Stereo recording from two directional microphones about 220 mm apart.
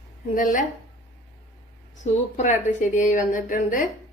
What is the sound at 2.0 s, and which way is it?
A woman's voice, 35° left (ahead or behind).